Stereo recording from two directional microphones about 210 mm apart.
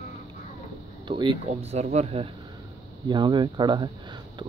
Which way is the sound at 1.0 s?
25° right (ahead or behind).